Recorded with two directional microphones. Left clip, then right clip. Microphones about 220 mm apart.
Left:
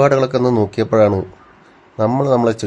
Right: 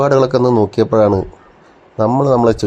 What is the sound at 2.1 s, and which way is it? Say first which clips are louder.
Speech: right 3 dB; 5° right (ahead or behind).